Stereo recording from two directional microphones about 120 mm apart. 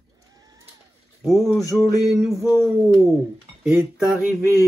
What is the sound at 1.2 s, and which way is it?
Speech, centre (ahead or behind).